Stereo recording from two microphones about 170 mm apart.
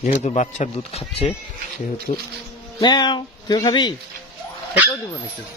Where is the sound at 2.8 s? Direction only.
25° left (ahead or behind).